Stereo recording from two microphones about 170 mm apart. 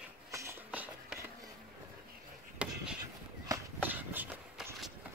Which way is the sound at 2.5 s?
5° right (ahead or behind).